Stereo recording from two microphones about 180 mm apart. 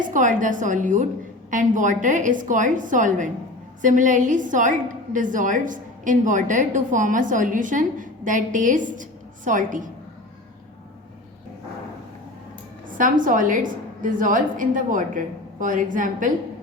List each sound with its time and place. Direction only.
0.0 s a woman's voice: 45° right (ahead or behind)
13.0 s a woman's voice: 45° right (ahead or behind)